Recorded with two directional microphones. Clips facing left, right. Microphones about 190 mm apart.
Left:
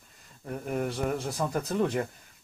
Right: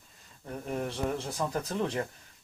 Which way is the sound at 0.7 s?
5° left (ahead or behind).